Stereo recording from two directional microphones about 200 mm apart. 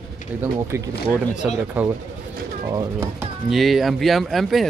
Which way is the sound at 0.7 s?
10° right (ahead or behind).